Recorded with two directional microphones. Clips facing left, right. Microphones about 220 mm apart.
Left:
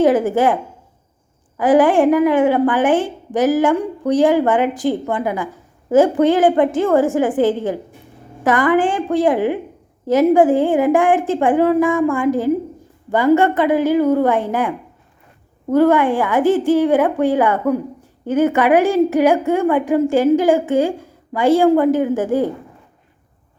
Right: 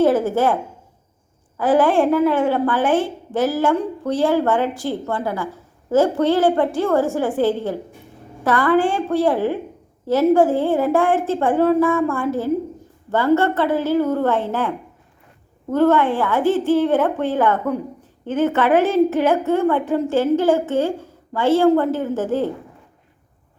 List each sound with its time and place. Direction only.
0.0 s a woman's voice: 15° left (ahead or behind)
15.7 s a woman's voice: 10° left (ahead or behind)